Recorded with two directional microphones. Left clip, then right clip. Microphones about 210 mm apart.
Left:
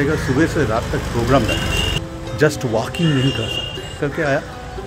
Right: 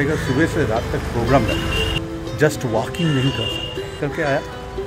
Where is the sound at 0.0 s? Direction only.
5° left (ahead or behind).